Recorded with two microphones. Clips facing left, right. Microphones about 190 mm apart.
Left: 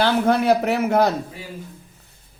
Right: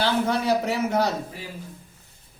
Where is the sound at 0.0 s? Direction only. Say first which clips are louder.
Left 5 dB; 60° left (ahead or behind).